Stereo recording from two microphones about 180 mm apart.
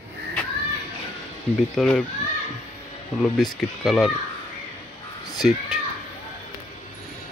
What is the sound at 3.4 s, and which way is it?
Speech, centre (ahead or behind).